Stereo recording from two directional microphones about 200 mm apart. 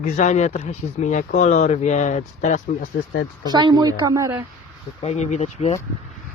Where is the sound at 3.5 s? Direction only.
20° right (ahead or behind).